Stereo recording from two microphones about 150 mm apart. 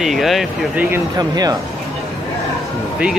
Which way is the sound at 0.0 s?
Centre (ahead or behind).